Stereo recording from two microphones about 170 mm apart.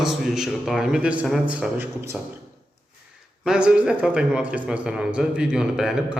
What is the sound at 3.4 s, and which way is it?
Speech, 5° right (ahead or behind).